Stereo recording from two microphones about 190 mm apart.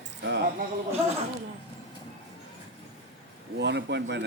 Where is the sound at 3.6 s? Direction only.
65° right (ahead or behind).